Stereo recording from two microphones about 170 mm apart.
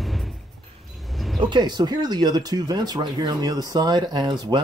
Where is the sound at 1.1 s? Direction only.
Centre (ahead or behind).